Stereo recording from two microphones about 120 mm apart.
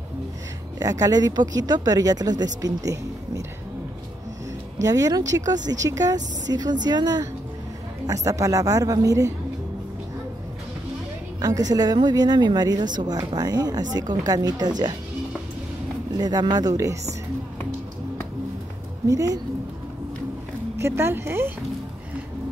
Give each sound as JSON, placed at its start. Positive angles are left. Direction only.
{"t": 0.7, "sound": "speech", "side_deg": -30}
{"t": 4.8, "sound": "a woman's voice", "side_deg": -30}
{"t": 11.4, "sound": "speech", "side_deg": -30}
{"t": 16.1, "sound": "speech", "side_deg": -35}
{"t": 19.0, "sound": "a woman's voice", "side_deg": -30}
{"t": 20.8, "sound": "a woman's voice", "side_deg": -20}